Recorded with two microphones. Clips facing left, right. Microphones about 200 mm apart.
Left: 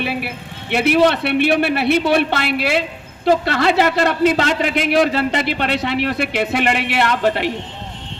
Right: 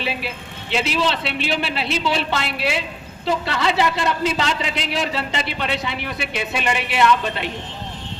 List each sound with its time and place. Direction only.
0.0 s a man's voice: 60° left (ahead or behind)